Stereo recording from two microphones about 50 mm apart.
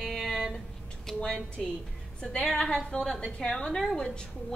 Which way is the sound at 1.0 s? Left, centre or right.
Centre.